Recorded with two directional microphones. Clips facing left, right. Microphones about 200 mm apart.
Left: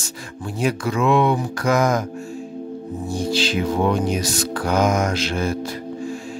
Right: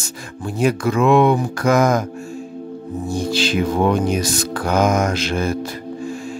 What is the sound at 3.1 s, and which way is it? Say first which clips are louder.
Music: right 2 dB; 50° right (ahead or behind).